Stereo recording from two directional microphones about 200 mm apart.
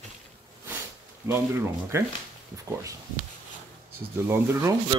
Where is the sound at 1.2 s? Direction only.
15° right (ahead or behind).